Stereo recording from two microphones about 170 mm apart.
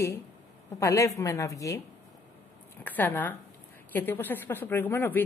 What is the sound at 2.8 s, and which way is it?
Speech, 10° left (ahead or behind).